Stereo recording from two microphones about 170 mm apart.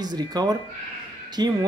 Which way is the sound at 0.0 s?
25° right (ahead or behind).